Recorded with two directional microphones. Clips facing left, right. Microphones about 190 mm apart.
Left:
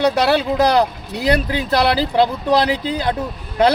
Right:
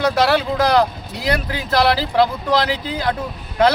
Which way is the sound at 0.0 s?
25° left (ahead or behind).